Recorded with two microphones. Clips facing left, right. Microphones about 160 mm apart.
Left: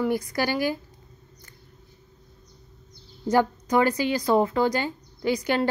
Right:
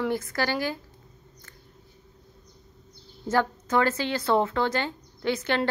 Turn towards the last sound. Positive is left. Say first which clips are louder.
# left 2 dB
turn(degrees=10)  # may be behind; listen again after turning